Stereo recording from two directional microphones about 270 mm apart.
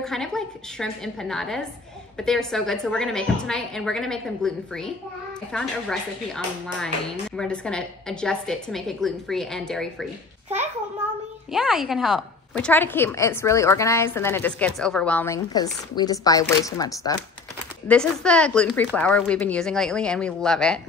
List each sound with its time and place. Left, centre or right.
0.0 s a woman's voice: centre
11.5 s a woman's voice: centre